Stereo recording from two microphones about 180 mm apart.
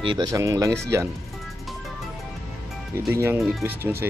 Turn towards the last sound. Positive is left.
turn(degrees=-10)  # may be behind; listen again after turning